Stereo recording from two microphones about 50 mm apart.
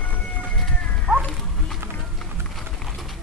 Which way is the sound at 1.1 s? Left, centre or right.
Right.